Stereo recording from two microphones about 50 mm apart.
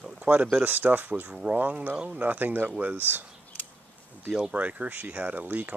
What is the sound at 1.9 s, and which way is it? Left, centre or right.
Speech, centre.